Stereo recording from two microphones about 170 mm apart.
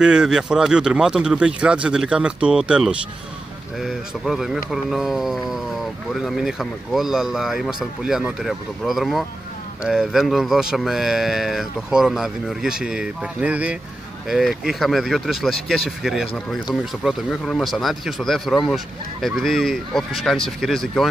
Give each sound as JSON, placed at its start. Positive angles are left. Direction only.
{"t": 0.0, "sound": "speech", "side_deg": -5}